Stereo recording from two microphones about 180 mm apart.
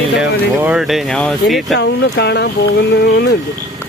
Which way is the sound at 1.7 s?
75° left (ahead or behind).